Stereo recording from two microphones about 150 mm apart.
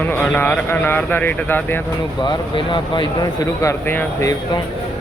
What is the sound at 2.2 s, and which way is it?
Speech, 30° left (ahead or behind).